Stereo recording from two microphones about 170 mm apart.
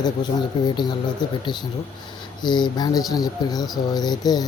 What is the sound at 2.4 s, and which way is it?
Speech, 25° left (ahead or behind).